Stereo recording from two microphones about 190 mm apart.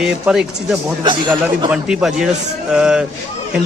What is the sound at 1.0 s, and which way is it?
Speech, 25° right (ahead or behind).